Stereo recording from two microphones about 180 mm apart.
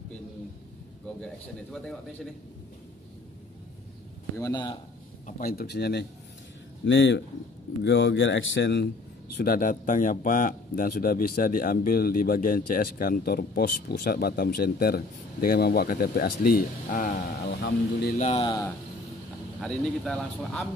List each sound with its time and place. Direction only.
1.2 s speech: 5° left (ahead or behind)
4.4 s a man's voice: 25° left (ahead or behind)
5.2 s a man's voice: 55° left (ahead or behind)
6.9 s speech: 85° left
9.4 s a man's voice: 50° left (ahead or behind)
18.1 s speech: 40° left (ahead or behind)
18.4 s a man's voice: 25° left (ahead or behind)
19.6 s speech: 5° left (ahead or behind)